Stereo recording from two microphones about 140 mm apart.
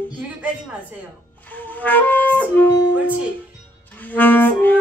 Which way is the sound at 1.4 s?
15° left (ahead or behind).